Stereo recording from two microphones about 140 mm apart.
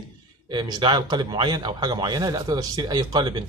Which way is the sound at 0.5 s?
30° right (ahead or behind).